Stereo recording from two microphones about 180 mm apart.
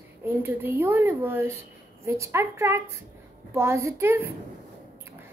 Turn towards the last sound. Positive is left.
turn(degrees=-10)  # may be behind; listen again after turning